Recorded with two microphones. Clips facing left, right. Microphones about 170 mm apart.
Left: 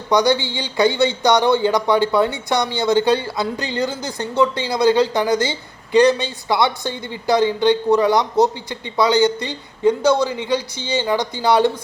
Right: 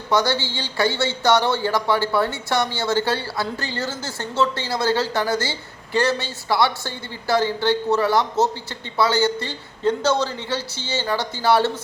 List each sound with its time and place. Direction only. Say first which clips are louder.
0.1 s speech: left 4 dB; 15° left (ahead or behind)